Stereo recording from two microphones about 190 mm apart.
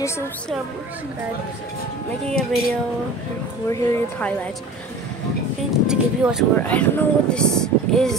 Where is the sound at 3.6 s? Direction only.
10° left (ahead or behind).